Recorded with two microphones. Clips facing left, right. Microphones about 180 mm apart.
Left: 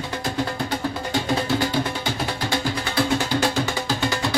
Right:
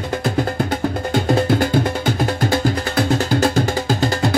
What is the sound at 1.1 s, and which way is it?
Music, 50° right (ahead or behind).